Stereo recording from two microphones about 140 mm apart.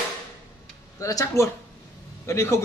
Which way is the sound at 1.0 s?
25° left (ahead or behind).